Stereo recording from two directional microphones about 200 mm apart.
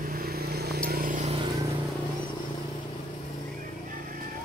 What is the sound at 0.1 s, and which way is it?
Vehicle, 50° right (ahead or behind).